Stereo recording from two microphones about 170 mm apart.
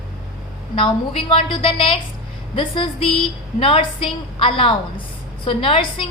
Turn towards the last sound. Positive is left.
turn(degrees=30)  # may be behind; listen again after turning